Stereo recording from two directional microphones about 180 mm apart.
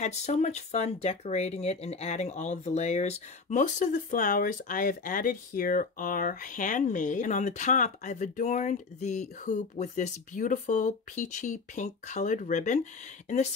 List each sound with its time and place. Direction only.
0.0 s speech: 40° left (ahead or behind)